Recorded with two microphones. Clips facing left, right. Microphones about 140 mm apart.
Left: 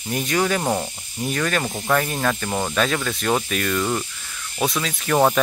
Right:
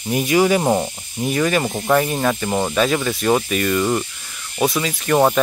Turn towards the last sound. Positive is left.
turn(degrees=-5)  # may be behind; listen again after turning